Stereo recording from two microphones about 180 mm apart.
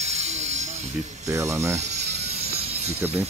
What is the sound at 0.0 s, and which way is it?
Music, 40° right (ahead or behind).